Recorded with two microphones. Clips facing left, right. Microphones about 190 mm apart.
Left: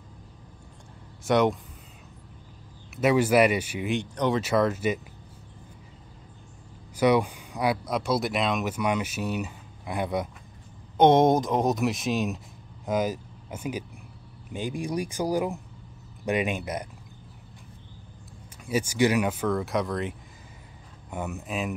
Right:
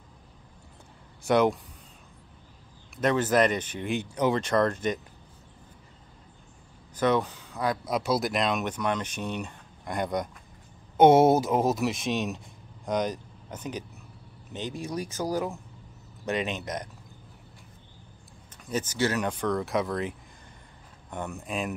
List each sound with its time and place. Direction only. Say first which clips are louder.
1.2 s speech: even; centre (ahead or behind)
3.0 s speech: left 3 dB; 10° left (ahead or behind)
4.4 s speech: left 1 dB; 5° left (ahead or behind)
7.0 s speech: left 3 dB; 10° left (ahead or behind)
7.8 s speech: even; centre (ahead or behind)
11.0 s speech: right 1 dB; 10° right (ahead or behind); by 16.9 s 10° left (ahead or behind)
18.7 s speech: left 4 dB; 10° left (ahead or behind)